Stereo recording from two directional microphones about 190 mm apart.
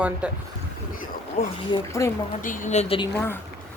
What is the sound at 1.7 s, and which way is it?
Speech, 15° left (ahead or behind).